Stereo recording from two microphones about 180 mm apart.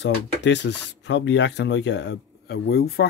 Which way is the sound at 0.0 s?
75° left (ahead or behind).